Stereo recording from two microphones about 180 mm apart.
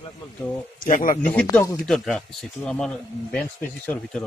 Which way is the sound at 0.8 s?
50° left (ahead or behind).